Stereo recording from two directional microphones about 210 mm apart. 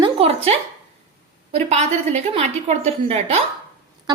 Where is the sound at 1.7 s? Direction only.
30° right (ahead or behind).